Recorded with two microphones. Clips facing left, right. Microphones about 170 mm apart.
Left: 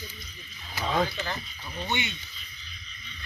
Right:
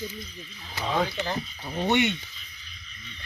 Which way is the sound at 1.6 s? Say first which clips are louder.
Right 10 dB; 60° right (ahead or behind).